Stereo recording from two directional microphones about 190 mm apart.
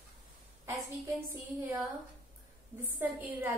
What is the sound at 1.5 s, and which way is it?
A woman's voice, 15° right (ahead or behind).